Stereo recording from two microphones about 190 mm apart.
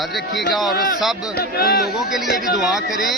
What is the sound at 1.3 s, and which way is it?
Speech, 55° left (ahead or behind).